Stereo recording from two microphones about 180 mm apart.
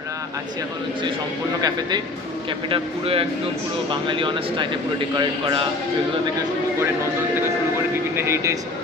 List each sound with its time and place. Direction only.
2.7 s speech: 30° right (ahead or behind)
8.2 s speech: 15° right (ahead or behind)